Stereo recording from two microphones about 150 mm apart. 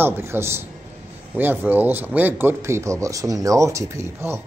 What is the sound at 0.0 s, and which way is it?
A man's voice, 15° right (ahead or behind).